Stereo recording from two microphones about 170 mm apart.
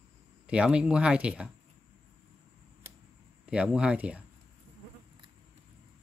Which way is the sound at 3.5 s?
5° right (ahead or behind).